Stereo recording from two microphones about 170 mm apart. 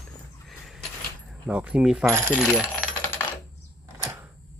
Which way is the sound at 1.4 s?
5° right (ahead or behind).